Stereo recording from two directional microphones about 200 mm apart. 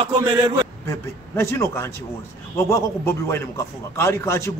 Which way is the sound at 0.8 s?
15° left (ahead or behind).